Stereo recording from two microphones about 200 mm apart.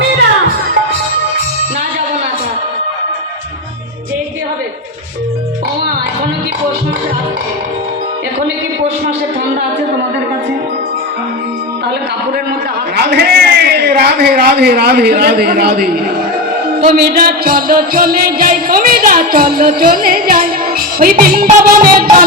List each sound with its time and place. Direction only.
13.0 s a man's voice: 55° right (ahead or behind)
16.8 s music: 45° right (ahead or behind)